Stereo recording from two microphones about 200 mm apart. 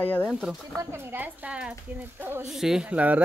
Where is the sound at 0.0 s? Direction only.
10° left (ahead or behind).